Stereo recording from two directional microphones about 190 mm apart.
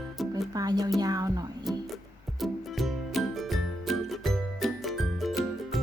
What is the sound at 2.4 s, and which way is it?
Music, centre (ahead or behind).